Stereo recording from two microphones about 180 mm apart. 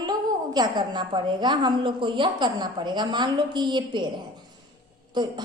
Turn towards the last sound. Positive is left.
turn(degrees=-25)  # may be behind; listen again after turning